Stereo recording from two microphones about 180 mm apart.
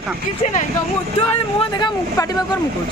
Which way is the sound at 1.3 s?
25° left (ahead or behind).